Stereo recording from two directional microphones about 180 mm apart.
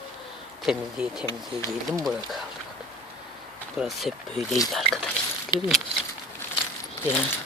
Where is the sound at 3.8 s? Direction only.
Centre (ahead or behind).